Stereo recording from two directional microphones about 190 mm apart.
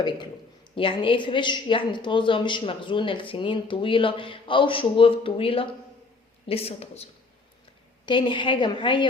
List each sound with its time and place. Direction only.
0.8 s a woman's voice: 25° left (ahead or behind)